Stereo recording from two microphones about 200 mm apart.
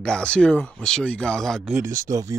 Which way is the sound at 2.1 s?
20° right (ahead or behind).